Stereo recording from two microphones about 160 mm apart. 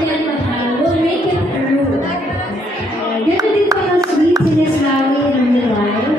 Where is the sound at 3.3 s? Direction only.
20° right (ahead or behind).